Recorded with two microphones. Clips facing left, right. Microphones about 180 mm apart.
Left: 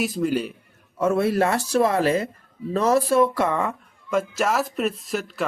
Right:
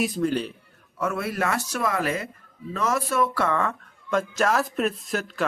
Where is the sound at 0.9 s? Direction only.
30° left (ahead or behind).